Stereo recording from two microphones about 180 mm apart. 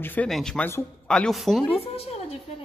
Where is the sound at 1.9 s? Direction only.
35° left (ahead or behind).